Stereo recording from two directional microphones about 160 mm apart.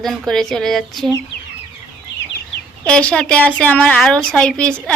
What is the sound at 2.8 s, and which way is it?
Speech, 5° left (ahead or behind).